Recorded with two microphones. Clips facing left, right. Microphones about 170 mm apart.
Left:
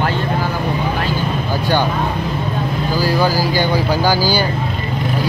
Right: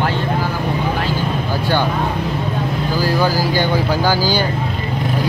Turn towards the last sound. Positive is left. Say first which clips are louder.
# left 1 dB
turn(degrees=10)  # may be behind; listen again after turning